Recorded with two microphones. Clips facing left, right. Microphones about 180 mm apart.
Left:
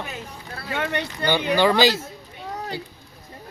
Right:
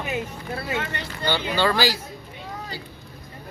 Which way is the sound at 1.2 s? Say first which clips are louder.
Left 2 dB; 65° left (ahead or behind).